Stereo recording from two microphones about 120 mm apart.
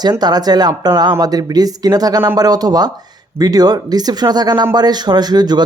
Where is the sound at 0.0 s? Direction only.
35° right (ahead or behind).